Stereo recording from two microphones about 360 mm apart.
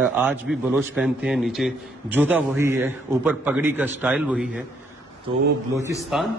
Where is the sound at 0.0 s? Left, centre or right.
Centre.